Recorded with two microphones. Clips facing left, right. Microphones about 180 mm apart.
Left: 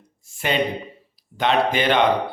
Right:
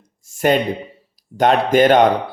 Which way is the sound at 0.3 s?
45° right (ahead or behind).